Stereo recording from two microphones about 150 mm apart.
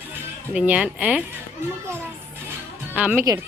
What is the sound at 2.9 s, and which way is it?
Speech, 10° right (ahead or behind).